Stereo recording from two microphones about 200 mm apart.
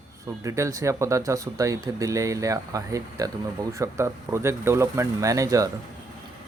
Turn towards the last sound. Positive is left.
turn(degrees=-15)  # may be behind; listen again after turning